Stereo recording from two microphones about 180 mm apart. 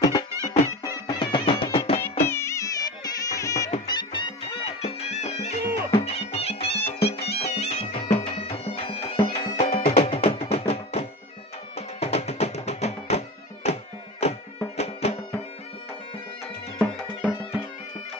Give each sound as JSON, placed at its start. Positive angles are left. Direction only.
{"t": 0.1, "sound": "music", "side_deg": 20}
{"t": 2.2, "sound": "music", "side_deg": 15}
{"t": 4.8, "sound": "music", "side_deg": 35}
{"t": 7.3, "sound": "bagpipes", "side_deg": 35}
{"t": 11.7, "sound": "music", "side_deg": 35}
{"t": 16.7, "sound": "music", "side_deg": 0}